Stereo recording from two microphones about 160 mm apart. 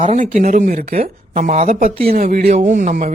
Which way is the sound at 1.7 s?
65° right (ahead or behind).